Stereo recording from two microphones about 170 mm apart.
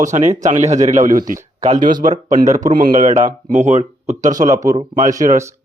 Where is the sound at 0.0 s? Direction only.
45° right (ahead or behind).